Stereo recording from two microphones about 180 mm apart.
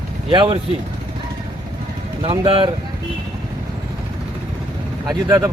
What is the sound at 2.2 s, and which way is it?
Speech, 25° right (ahead or behind).